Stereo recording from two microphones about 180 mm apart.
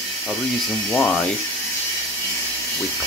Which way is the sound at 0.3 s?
Centre (ahead or behind).